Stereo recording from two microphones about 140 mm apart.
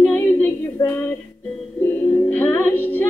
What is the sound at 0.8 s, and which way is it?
Female singing, 25° left (ahead or behind).